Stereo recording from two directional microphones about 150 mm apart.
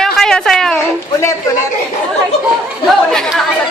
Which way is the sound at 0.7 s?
20° left (ahead or behind).